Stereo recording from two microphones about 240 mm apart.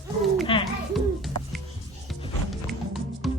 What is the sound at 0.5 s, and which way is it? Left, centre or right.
Speech, left.